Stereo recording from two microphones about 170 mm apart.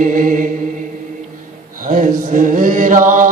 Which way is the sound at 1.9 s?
50° right (ahead or behind).